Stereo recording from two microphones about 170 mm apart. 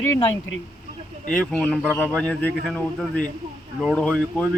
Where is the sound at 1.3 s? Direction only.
5° left (ahead or behind).